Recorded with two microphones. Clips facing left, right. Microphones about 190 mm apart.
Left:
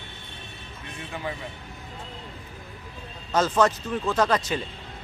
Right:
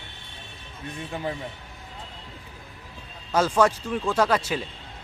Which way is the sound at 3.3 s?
10° right (ahead or behind).